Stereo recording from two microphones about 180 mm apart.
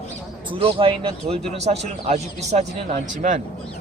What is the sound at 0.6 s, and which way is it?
A man's voice, 30° right (ahead or behind).